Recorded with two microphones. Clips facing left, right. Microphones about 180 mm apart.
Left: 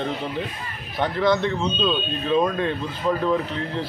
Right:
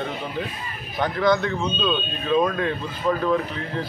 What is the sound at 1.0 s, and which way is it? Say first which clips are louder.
A man's voice: even; centre (ahead or behind).